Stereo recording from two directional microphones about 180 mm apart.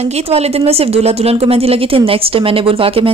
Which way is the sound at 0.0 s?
35° right (ahead or behind).